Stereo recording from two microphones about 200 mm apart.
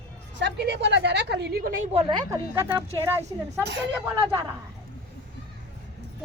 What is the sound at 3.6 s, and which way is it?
Speech, 60° right (ahead or behind).